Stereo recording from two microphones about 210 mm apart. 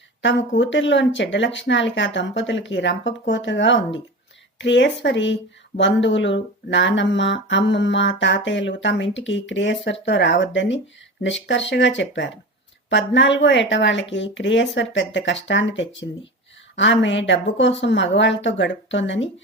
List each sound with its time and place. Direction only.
0.2 s speech: 55° left (ahead or behind)